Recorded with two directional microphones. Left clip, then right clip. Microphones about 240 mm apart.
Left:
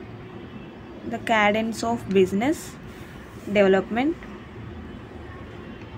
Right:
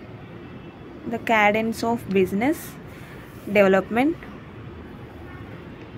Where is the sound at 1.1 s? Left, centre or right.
Centre.